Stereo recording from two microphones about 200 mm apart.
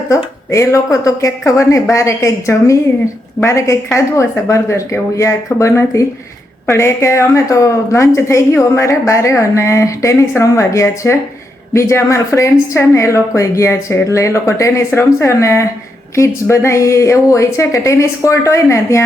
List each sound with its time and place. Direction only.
0.1 s a woman's voice: 15° left (ahead or behind)